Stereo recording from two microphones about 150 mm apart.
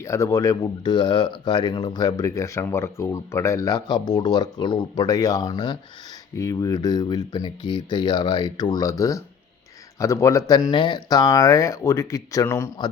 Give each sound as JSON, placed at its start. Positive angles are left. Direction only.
{"t": 0.0, "sound": "speech", "side_deg": 20}